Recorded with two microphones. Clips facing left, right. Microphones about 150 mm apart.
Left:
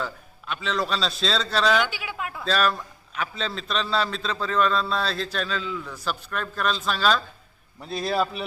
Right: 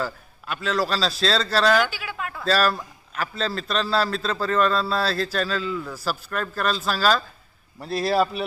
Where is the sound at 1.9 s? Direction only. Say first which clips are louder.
Right 1 dB; 15° left (ahead or behind).